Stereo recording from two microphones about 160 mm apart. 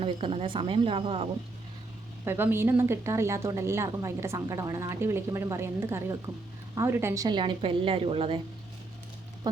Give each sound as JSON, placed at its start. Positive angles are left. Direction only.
{"t": 0.0, "sound": "a woman's voice", "side_deg": -35}
{"t": 2.2, "sound": "a woman's voice", "side_deg": -15}